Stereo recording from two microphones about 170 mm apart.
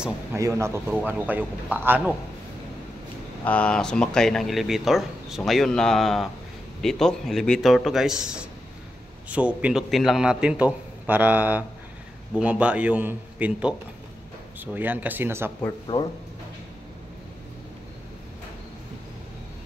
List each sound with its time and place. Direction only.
0.0 s a man's voice: 15° right (ahead or behind)
3.4 s a man's voice: 5° left (ahead or behind); by 15.5 s 15° right (ahead or behind)
15.9 s speech: 25° left (ahead or behind)